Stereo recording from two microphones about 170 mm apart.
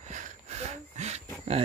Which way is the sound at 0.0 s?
45° right (ahead or behind).